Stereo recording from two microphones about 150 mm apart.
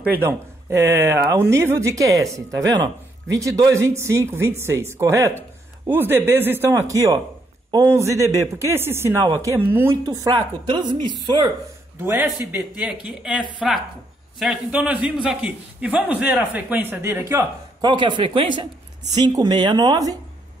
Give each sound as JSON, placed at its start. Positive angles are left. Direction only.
{"t": 0.1, "sound": "a man's voice", "side_deg": -15}
{"t": 10.0, "sound": "speech", "side_deg": -25}
{"t": 12.0, "sound": "a man's voice", "side_deg": -15}
{"t": 17.8, "sound": "speech", "side_deg": -30}